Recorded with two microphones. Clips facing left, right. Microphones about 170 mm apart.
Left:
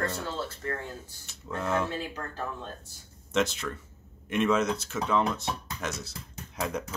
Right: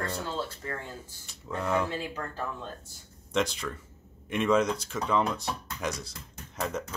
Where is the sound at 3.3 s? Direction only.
5° left (ahead or behind).